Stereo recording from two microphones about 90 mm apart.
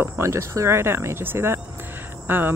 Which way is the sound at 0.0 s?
30° right (ahead or behind).